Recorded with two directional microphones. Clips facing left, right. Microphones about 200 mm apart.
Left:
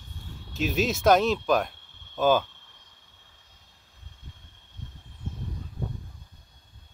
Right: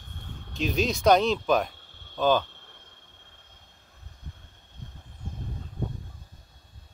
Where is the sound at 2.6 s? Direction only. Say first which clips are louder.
Right 6 dB; 55° right (ahead or behind).